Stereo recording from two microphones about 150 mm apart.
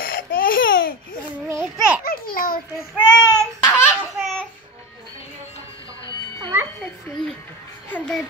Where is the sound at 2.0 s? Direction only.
75° left (ahead or behind).